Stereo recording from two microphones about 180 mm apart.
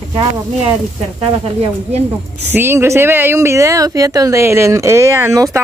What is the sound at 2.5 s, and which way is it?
Speech, 10° right (ahead or behind).